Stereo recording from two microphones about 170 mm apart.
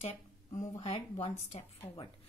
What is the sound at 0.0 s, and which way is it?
Speech, 40° left (ahead or behind).